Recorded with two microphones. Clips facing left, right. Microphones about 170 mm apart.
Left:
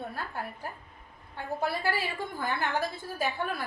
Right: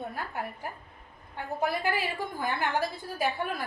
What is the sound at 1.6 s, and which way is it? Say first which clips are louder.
A woman's voice: right 2 dB; 15° right (ahead or behind).